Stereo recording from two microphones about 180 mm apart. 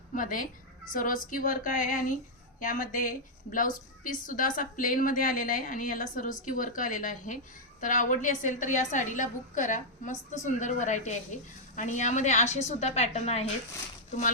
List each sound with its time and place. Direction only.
0.1 s a woman's voice: 50° left (ahead or behind)